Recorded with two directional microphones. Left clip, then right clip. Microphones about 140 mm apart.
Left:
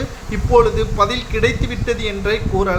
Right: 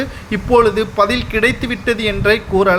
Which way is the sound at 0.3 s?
40° right (ahead or behind).